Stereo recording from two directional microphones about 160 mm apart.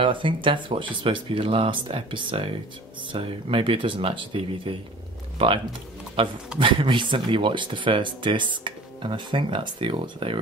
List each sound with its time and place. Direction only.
0.0 s speech: 30° right (ahead or behind)
6.2 s speech: 35° right (ahead or behind)